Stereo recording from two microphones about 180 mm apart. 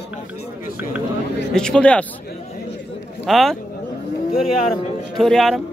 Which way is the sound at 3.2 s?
Centre (ahead or behind).